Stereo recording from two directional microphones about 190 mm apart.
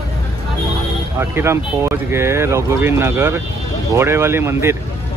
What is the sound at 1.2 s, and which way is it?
Speech, 15° right (ahead or behind).